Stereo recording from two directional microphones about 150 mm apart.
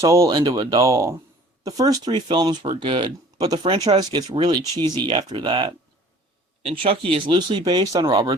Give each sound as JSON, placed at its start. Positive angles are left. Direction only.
{"t": 0.0, "sound": "speech", "side_deg": -20}